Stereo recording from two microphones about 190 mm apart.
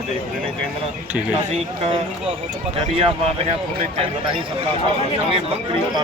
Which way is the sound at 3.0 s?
30° right (ahead or behind).